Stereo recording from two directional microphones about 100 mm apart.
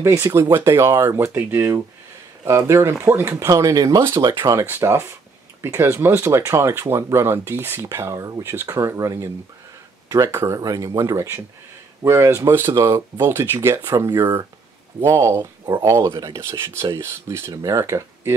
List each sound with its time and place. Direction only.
0.0 s speech: 25° right (ahead or behind)
4.6 s speech: 25° right (ahead or behind)
10.3 s speech: 30° right (ahead or behind)